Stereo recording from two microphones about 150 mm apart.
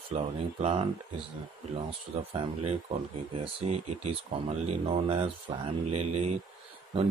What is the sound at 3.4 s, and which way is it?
Speech, 45° right (ahead or behind).